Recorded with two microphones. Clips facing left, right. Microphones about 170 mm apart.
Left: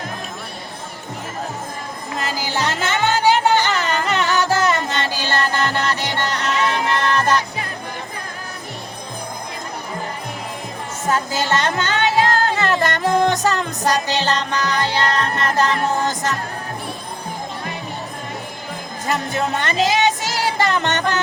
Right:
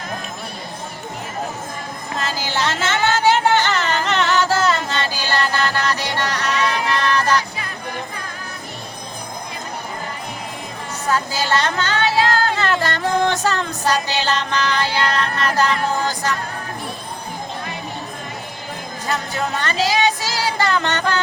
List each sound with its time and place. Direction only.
2.2 s music: 10° left (ahead or behind)
11.0 s speech: 20° left (ahead or behind)
15.1 s music: 20° left (ahead or behind)
19.3 s music: 25° left (ahead or behind)